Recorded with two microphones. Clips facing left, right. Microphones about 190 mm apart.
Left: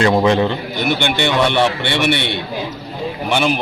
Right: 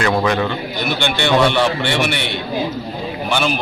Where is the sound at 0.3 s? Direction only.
25° left (ahead or behind).